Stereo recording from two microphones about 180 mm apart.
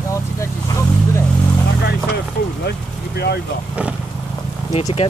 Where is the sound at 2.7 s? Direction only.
65° left (ahead or behind).